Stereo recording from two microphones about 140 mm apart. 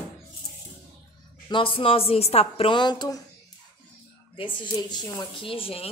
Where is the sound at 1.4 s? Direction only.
40° left (ahead or behind).